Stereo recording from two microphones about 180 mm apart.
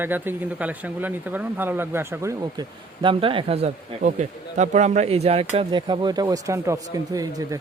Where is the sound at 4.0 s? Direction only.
45° right (ahead or behind).